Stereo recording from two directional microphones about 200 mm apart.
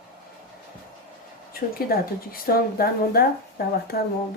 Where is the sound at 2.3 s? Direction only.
45° left (ahead or behind).